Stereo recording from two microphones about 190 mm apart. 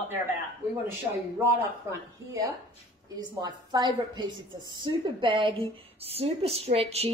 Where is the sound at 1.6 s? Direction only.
15° right (ahead or behind).